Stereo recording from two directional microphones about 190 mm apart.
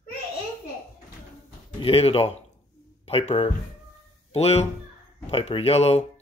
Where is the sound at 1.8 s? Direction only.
30° left (ahead or behind).